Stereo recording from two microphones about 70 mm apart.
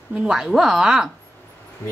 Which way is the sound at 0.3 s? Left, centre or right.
Centre.